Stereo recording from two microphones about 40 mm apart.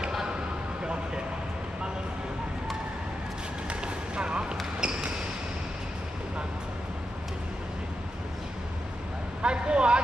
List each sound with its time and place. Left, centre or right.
3.6 s run: right
4.7 s basketball bounce: right
9.4 s vehicle: right